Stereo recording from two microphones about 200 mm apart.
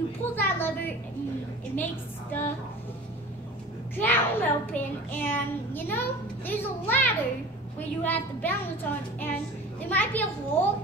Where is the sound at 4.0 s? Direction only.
10° left (ahead or behind).